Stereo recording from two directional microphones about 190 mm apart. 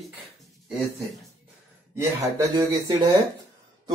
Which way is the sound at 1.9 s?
15° right (ahead or behind).